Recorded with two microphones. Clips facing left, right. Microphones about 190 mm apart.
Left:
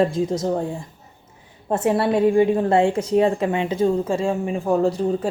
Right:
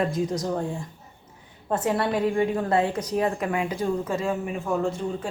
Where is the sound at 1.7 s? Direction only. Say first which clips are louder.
Left 5 dB; 25° left (ahead or behind).